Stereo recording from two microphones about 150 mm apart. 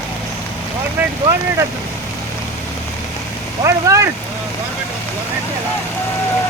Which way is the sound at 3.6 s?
20° right (ahead or behind).